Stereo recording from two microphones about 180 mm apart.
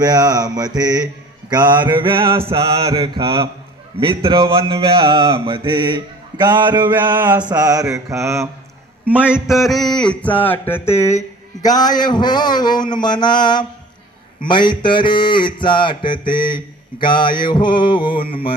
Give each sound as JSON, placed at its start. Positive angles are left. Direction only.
{"t": 0.0, "sound": "speech", "side_deg": -20}
{"t": 7.5, "sound": "mantra", "side_deg": -20}
{"t": 9.3, "sound": "mantra", "side_deg": 0}
{"t": 11.6, "sound": "a sound", "side_deg": 20}